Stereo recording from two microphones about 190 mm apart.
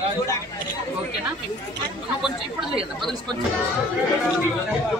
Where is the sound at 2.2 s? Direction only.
Centre (ahead or behind).